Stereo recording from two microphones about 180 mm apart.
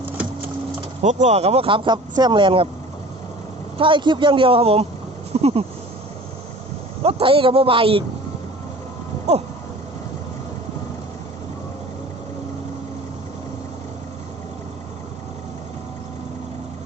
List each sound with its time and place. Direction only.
0.2 s sewing machine: 5° right (ahead or behind)
1.0 s speech: 40° right (ahead or behind)
3.8 s speech: 30° right (ahead or behind)
7.0 s speech: 30° right (ahead or behind)
9.3 s speech: 35° right (ahead or behind)